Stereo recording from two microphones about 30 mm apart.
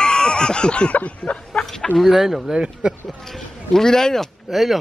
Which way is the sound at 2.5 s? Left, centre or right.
Right.